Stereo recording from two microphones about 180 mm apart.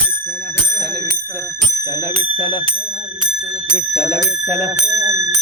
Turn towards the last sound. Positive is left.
turn(degrees=15)  # may be behind; listen again after turning